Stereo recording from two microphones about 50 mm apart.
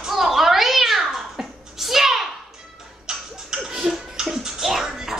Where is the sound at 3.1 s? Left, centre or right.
Centre.